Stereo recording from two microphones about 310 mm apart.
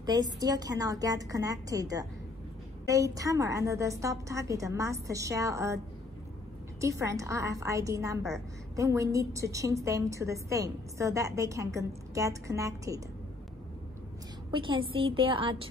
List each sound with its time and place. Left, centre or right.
0.0 s a woman's voice: centre
6.8 s a woman's voice: centre
14.5 s a woman's voice: centre